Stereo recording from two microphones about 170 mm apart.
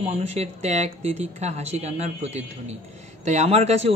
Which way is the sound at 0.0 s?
40° right (ahead or behind).